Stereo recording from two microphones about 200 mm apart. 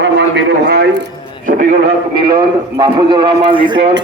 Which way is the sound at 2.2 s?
20° right (ahead or behind).